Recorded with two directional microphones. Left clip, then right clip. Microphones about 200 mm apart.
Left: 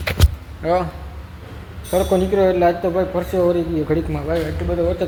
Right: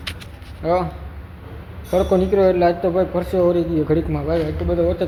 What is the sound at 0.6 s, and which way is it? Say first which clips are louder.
Speech: left 1 dB; centre (ahead or behind).